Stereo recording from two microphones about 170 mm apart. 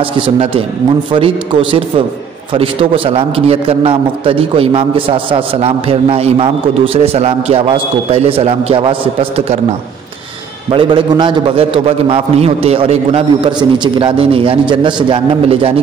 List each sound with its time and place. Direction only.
0.0 s a man's voice: 35° right (ahead or behind)
10.7 s a man's voice: 30° right (ahead or behind)